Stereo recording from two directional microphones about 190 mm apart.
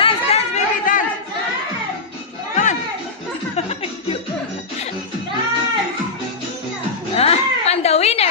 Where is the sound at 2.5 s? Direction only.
40° left (ahead or behind).